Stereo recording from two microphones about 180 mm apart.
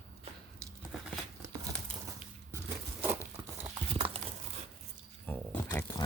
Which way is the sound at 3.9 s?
30° right (ahead or behind).